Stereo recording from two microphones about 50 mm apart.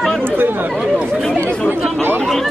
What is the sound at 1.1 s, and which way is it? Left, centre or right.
Speech, centre.